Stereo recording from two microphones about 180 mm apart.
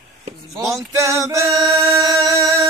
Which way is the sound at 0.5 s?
15° right (ahead or behind).